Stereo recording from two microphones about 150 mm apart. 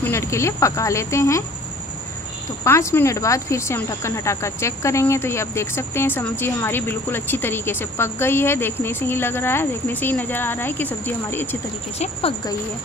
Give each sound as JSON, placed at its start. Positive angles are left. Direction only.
{"t": 0.0, "sound": "speech", "side_deg": 15}
{"t": 2.6, "sound": "speech", "side_deg": 20}
{"t": 12.0, "sound": "speech", "side_deg": 40}